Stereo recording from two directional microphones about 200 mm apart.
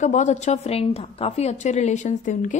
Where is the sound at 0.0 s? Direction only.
35° left (ahead or behind).